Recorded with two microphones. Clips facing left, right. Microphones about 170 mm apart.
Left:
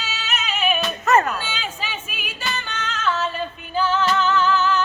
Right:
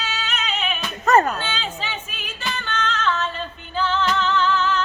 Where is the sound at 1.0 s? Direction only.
35° right (ahead or behind).